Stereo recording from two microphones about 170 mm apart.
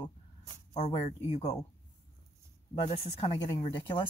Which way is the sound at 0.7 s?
40° left (ahead or behind).